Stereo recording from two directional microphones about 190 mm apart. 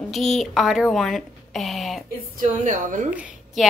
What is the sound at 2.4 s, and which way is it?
Speech, 40° right (ahead or behind).